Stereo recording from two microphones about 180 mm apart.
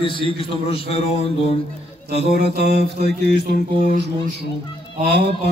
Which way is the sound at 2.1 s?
65° right (ahead or behind).